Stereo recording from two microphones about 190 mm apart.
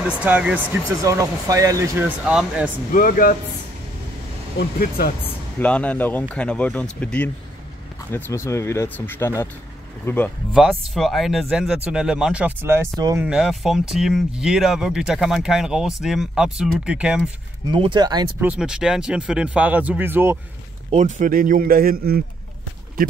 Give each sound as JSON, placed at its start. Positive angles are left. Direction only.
{"t": 0.0, "sound": "a man's voice", "side_deg": -5}
{"t": 2.9, "sound": "speech", "side_deg": 45}
{"t": 4.6, "sound": "speech", "side_deg": 50}
{"t": 5.2, "sound": "speech", "side_deg": 10}
{"t": 13.2, "sound": "speech", "side_deg": -5}
{"t": 17.6, "sound": "speech", "side_deg": -25}
{"t": 18.4, "sound": "a man's voice", "side_deg": -5}
{"t": 20.9, "sound": "a man's voice", "side_deg": -40}